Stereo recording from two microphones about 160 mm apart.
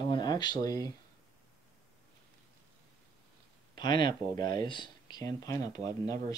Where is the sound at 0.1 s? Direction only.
25° left (ahead or behind).